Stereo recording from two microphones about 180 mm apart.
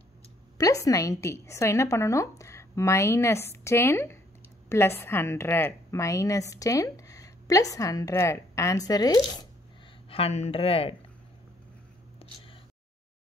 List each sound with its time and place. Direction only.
0.6 s a woman's voice: 20° left (ahead or behind)
10.0 s a woman's voice: 30° left (ahead or behind)
12.2 s a sound: 30° left (ahead or behind)